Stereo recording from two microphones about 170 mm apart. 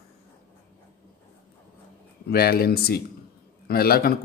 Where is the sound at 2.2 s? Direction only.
65° left (ahead or behind).